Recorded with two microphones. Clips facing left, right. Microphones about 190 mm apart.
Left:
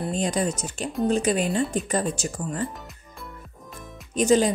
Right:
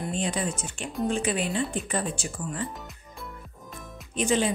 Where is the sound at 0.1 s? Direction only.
40° left (ahead or behind).